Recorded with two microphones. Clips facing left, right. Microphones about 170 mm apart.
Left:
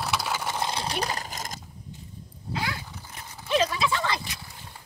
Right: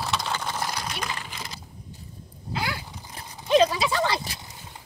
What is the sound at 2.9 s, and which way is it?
Horse, 15° right (ahead or behind).